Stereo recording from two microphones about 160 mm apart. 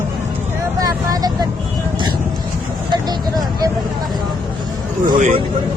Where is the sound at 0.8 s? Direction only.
25° right (ahead or behind).